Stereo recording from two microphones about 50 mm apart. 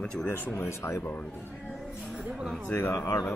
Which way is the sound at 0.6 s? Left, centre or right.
Left.